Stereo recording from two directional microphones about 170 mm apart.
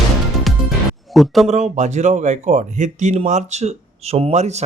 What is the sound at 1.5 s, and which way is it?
Speech, 45° right (ahead or behind).